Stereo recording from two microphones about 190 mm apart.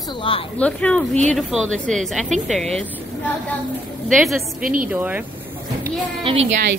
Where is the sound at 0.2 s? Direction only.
30° left (ahead or behind).